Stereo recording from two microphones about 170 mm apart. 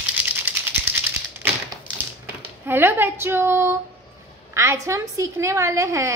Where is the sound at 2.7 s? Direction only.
10° right (ahead or behind).